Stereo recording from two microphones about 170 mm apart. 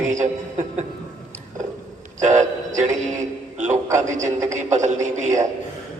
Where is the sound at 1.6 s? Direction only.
45° right (ahead or behind).